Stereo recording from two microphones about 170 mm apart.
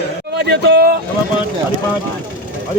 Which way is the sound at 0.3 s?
80° right.